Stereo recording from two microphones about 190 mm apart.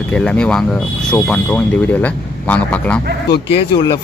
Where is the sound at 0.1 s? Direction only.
5° left (ahead or behind).